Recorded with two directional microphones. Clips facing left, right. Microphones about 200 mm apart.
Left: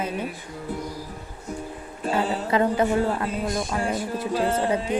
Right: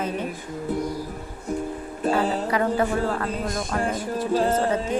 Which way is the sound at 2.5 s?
20° left (ahead or behind).